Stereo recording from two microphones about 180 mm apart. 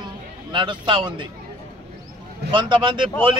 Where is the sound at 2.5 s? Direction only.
25° right (ahead or behind).